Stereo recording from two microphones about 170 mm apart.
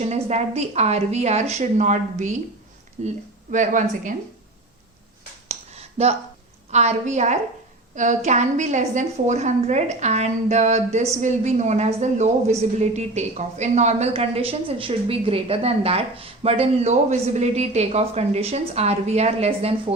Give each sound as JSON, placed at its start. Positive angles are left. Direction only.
{"t": 0.0, "sound": "a woman's voice", "side_deg": -40}
{"t": 5.5, "sound": "finger snapping", "side_deg": -40}
{"t": 6.7, "sound": "a woman's voice", "side_deg": -40}